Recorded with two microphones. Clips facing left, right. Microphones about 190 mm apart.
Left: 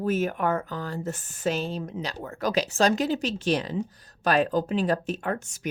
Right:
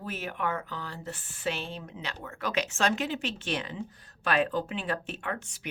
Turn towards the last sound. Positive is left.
turn(degrees=45)  # may be behind; listen again after turning